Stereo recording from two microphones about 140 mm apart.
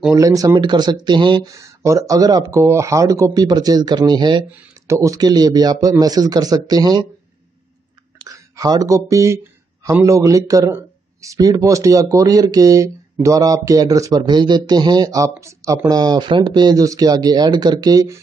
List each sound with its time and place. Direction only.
0.1 s speech: 25° right (ahead or behind)
4.5 s speech: 15° right (ahead or behind)
8.2 s a sound: 25° right (ahead or behind)
9.1 s speech: 20° right (ahead or behind)